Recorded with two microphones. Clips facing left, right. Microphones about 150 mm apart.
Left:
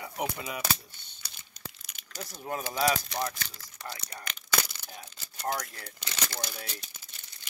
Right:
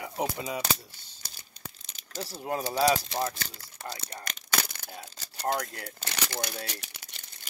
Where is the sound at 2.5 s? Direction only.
35° right (ahead or behind).